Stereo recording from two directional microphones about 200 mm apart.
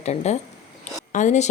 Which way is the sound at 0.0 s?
35° left (ahead or behind).